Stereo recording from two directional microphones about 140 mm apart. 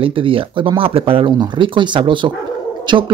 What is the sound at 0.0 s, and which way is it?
Speech, 40° right (ahead or behind).